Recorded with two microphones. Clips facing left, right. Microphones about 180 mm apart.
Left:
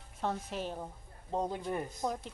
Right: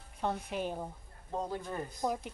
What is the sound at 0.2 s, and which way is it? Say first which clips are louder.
Speech: right 1 dB; centre (ahead or behind).